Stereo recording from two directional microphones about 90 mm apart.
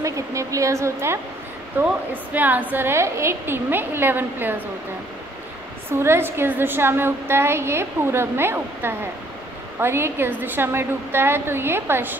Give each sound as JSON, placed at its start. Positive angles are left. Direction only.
{"t": 0.0, "sound": "a woman's voice", "side_deg": -35}
{"t": 5.9, "sound": "a woman's voice", "side_deg": -25}